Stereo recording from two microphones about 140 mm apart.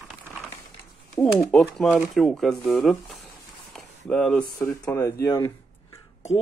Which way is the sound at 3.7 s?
5° left (ahead or behind).